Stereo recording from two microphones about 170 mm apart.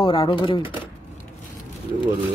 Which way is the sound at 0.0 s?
30° left (ahead or behind).